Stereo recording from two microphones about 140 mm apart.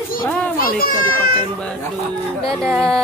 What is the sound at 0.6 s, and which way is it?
Speech, 85° left.